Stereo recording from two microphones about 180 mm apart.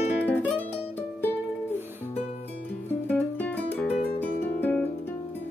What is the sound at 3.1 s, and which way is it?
Music, 10° left (ahead or behind).